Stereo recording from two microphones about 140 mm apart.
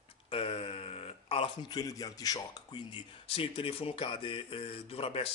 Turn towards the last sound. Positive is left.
turn(degrees=45)  # may be behind; listen again after turning